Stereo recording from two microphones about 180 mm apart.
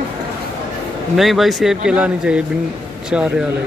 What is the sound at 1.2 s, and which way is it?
Speech, centre (ahead or behind).